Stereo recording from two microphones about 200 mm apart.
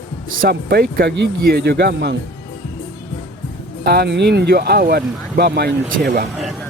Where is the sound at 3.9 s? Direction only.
55° right (ahead or behind).